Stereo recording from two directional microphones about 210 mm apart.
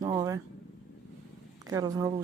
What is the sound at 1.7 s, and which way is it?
Speech, 15° right (ahead or behind).